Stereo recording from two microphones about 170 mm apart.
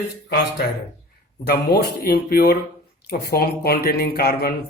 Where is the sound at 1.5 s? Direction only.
65° left (ahead or behind).